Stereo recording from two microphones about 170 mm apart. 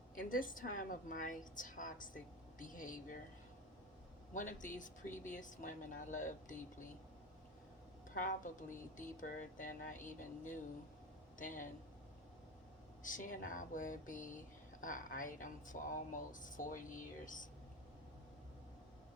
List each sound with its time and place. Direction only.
0.2 s speech: 55° left (ahead or behind)
4.4 s speech: 50° left (ahead or behind)
8.1 s speech: 50° left (ahead or behind)
11.3 s speech: 50° left (ahead or behind)
13.0 s speech: 50° left (ahead or behind)